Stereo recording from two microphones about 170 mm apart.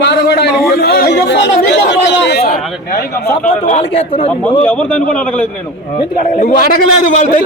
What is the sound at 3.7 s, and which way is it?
Speech, 40° left (ahead or behind).